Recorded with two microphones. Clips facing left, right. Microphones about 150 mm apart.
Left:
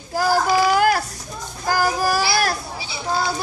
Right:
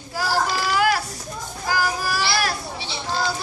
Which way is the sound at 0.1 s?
45° left (ahead or behind).